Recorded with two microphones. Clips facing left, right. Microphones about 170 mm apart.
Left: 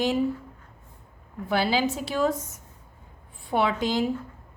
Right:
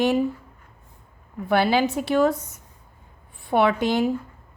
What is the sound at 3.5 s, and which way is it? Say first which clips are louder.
Speech: right 4 dB; 60° right (ahead or behind).